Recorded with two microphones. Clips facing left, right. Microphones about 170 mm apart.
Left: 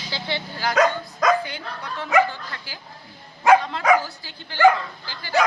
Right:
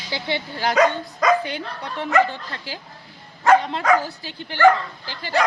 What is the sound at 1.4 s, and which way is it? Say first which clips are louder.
Speech: right 3 dB; 25° right (ahead or behind).